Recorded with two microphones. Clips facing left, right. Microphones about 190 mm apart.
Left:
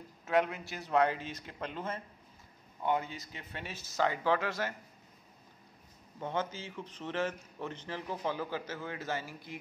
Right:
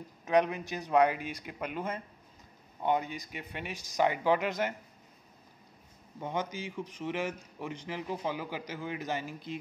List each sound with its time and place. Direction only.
0.2 s a man's voice: 20° right (ahead or behind)
6.2 s a man's voice: 15° right (ahead or behind)